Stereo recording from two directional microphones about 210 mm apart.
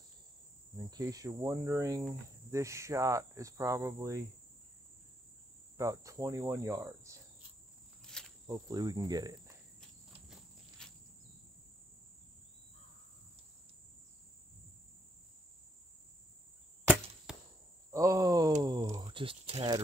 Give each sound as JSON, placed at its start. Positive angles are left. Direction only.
{"t": 0.8, "sound": "cricket", "side_deg": -15}
{"t": 5.8, "sound": "cricket", "side_deg": -15}
{"t": 8.0, "sound": "cricket", "side_deg": 5}
{"t": 8.5, "sound": "cricket", "side_deg": -15}
{"t": 10.8, "sound": "a sound", "side_deg": 5}
{"t": 17.3, "sound": "chop", "side_deg": -5}
{"t": 17.9, "sound": "speech", "side_deg": -15}